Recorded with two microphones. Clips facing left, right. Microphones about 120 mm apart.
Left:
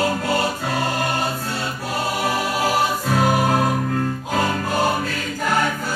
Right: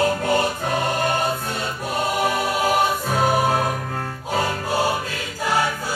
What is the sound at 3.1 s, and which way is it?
Music, 20° right (ahead or behind).